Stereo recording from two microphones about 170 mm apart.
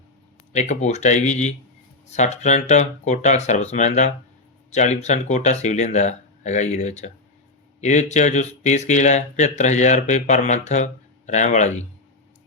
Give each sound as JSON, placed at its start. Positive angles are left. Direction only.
{"t": 0.5, "sound": "speech", "side_deg": 40}